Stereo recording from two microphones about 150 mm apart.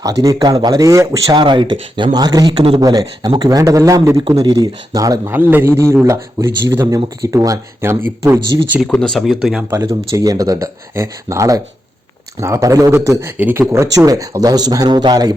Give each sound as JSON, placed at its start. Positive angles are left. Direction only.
{"t": 0.0, "sound": "a man's voice", "side_deg": -25}
{"t": 5.4, "sound": "a man's voice", "side_deg": -15}
{"t": 8.9, "sound": "speech", "side_deg": 5}
{"t": 9.6, "sound": "a man's voice", "side_deg": -20}